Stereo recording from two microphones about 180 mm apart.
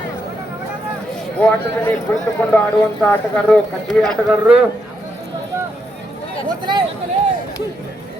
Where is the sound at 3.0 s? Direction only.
5° left (ahead or behind).